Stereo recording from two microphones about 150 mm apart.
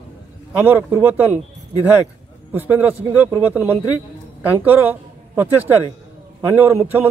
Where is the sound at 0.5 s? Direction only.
10° right (ahead or behind).